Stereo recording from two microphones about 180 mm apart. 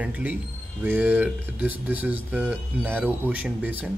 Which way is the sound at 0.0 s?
10° right (ahead or behind).